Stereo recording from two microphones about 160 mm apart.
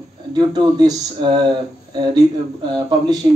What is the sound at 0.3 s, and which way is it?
A man's voice, 25° right (ahead or behind).